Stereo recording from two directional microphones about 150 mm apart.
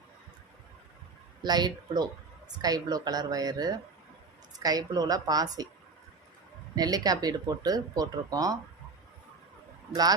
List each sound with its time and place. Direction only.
1.4 s speech: 30° right (ahead or behind)
6.7 s speech: 25° right (ahead or behind)
9.9 s speech: 25° right (ahead or behind)